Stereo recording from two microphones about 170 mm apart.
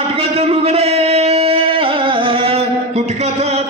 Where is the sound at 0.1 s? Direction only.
35° right (ahead or behind).